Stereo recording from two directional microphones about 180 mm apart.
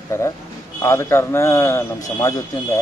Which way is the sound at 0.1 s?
15° left (ahead or behind).